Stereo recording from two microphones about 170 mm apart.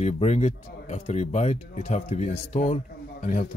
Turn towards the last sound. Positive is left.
turn(degrees=45)  # may be behind; listen again after turning